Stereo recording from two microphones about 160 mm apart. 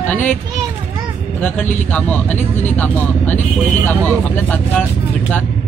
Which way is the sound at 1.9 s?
10° left (ahead or behind).